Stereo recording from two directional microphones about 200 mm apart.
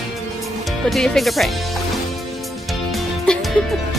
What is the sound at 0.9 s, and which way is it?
Speech, centre (ahead or behind).